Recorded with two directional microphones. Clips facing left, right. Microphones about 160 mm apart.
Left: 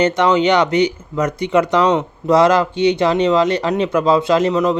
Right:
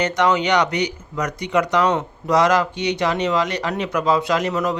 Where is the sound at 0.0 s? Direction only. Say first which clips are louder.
Left 5 dB; 25° left (ahead or behind).